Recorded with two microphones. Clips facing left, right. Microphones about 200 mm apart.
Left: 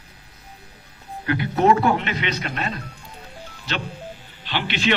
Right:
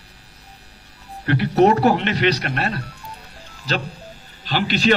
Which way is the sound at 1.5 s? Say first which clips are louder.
Right 3 dB; 40° right (ahead or behind).